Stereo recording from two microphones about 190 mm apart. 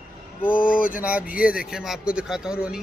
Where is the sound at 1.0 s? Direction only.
5° right (ahead or behind).